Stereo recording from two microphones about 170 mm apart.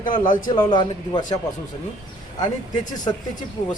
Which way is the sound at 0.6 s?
25° left (ahead or behind).